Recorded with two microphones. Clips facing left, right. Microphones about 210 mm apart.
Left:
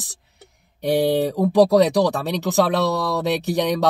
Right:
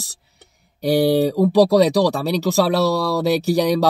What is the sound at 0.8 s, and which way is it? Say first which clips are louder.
Speech: right 3 dB; centre (ahead or behind).